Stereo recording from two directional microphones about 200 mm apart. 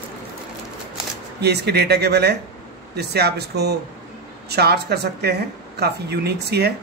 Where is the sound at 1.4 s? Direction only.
55° right (ahead or behind).